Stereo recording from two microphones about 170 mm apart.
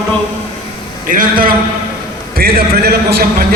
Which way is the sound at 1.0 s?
55° right (ahead or behind).